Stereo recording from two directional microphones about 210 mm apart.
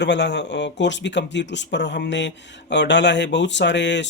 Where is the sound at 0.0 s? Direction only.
55° left (ahead or behind).